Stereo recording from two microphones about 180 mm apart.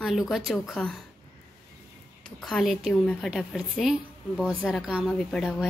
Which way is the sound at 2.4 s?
Centre (ahead or behind).